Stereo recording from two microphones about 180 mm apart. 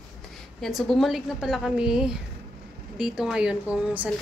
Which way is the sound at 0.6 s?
Centre (ahead or behind).